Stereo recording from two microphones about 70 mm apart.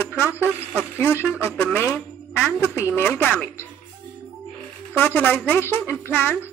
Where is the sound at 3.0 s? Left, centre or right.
Left.